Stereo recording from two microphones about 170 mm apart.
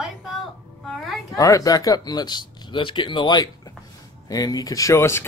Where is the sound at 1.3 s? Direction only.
20° left (ahead or behind).